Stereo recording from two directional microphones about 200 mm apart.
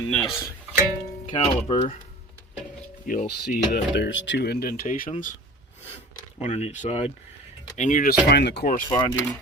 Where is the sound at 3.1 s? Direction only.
50° left (ahead or behind).